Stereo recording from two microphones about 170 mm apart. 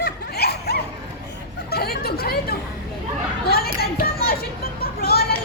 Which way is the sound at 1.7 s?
65° left (ahead or behind).